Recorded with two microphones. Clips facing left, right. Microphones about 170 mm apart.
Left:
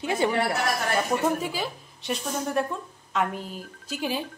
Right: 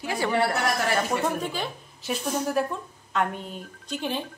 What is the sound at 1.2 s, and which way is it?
Speech, 5° left (ahead or behind).